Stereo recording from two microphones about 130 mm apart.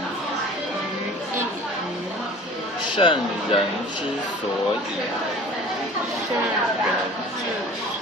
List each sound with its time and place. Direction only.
3.0 s speech: 40° left (ahead or behind)